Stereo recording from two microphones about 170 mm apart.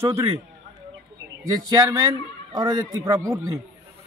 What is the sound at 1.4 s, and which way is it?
A man's voice, 20° right (ahead or behind).